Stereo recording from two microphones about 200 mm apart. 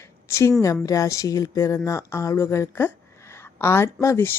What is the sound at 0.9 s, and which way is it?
Speech, 15° left (ahead or behind).